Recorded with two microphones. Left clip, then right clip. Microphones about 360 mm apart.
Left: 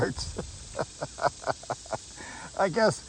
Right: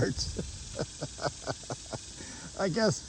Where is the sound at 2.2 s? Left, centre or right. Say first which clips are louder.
Left 4 dB; centre.